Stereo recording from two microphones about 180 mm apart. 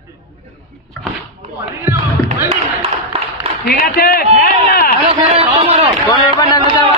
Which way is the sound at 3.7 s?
55° left (ahead or behind).